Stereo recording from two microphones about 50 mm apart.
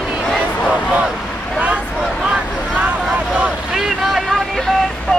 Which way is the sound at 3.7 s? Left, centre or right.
Centre.